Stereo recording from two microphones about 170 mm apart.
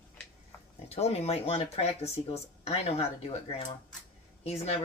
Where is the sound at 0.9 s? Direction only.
40° left (ahead or behind).